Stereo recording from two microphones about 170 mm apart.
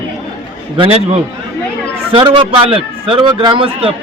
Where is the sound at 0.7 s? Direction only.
35° right (ahead or behind).